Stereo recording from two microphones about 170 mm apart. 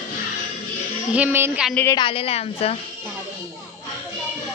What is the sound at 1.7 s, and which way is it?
Speech, 10° left (ahead or behind).